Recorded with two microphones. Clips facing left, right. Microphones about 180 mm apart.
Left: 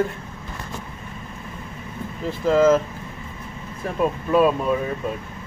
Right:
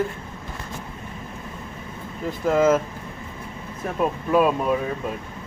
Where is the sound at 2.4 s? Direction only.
5° right (ahead or behind).